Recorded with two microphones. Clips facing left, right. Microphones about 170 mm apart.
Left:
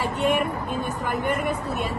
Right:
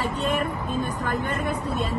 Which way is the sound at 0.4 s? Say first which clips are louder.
Even; 15° left (ahead or behind).